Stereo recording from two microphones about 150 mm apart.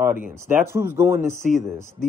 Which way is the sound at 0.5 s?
15° right (ahead or behind).